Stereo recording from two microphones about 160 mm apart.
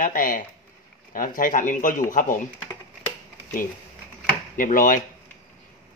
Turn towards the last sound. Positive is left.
turn(degrees=55)  # may be behind; listen again after turning